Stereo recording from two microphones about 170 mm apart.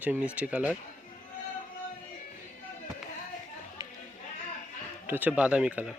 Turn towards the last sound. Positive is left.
turn(degrees=-5)  # may be behind; listen again after turning